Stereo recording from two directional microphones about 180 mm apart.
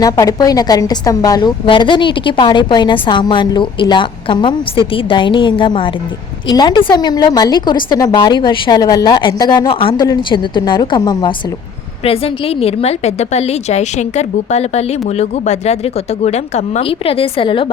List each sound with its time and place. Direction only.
0.0 s a woman's voice: 20° left (ahead or behind)